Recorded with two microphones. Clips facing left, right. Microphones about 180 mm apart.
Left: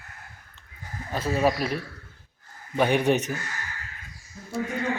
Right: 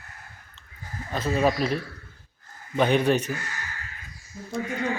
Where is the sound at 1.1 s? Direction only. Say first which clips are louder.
Even; 10° left (ahead or behind).